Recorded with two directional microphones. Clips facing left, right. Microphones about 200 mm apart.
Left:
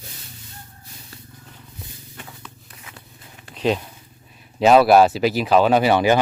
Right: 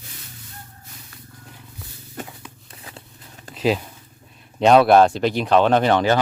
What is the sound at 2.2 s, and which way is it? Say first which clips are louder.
Walk: right 8 dB; 45° right (ahead or behind).